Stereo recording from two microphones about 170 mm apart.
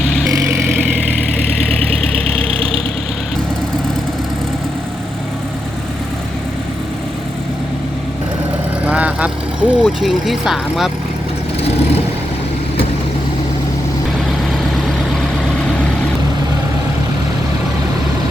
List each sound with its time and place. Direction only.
2.4 s vehicle: 35° right (ahead or behind)
8.9 s vehicle: 5° right (ahead or behind)
9.8 s speech: centre (ahead or behind)